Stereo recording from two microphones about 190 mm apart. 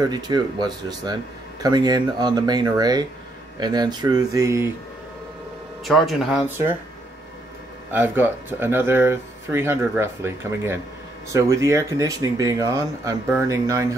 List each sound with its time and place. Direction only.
0.0 s speech: 20° right (ahead or behind)
5.9 s speech: centre (ahead or behind)
7.9 s speech: 10° right (ahead or behind)